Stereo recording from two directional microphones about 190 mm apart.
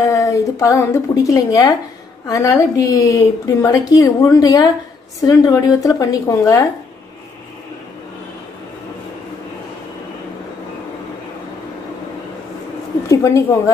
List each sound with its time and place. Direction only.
0.0 s a woman's voice: 15° left (ahead or behind)
13.1 s a woman's voice: 15° left (ahead or behind)